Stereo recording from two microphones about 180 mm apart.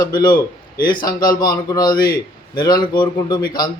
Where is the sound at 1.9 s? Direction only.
55° left (ahead or behind).